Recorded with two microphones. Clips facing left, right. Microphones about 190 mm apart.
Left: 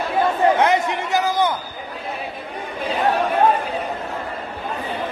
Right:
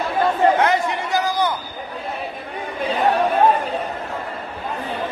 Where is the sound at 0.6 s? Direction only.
20° left (ahead or behind).